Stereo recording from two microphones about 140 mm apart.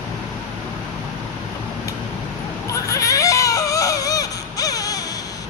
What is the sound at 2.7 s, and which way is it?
Baby cry, 20° left (ahead or behind).